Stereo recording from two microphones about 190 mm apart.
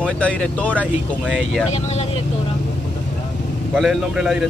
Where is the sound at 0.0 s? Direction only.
5° left (ahead or behind).